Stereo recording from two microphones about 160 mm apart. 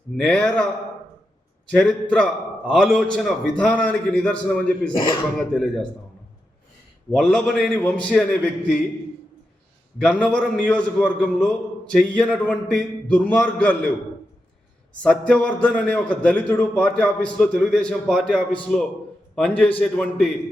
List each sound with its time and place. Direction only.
0.2 s a man's voice: 5° left (ahead or behind)
1.7 s a man's voice: 5° left (ahead or behind)
4.9 s speech: 30° left (ahead or behind)
5.4 s a man's voice: centre (ahead or behind)
7.2 s a man's voice: 5° left (ahead or behind)
10.0 s a man's voice: 5° left (ahead or behind)
15.0 s a man's voice: 5° left (ahead or behind)